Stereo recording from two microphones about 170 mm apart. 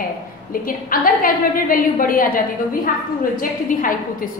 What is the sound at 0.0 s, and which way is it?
A woman's voice, 55° left (ahead or behind).